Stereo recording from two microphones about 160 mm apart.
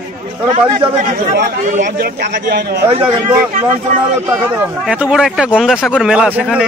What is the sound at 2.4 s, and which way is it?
Speech, 90° right.